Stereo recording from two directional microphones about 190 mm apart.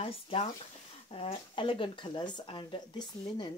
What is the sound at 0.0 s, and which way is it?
Speech, 30° left (ahead or behind).